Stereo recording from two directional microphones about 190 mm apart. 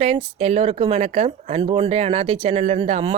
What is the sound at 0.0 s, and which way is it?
Speech, 35° right (ahead or behind).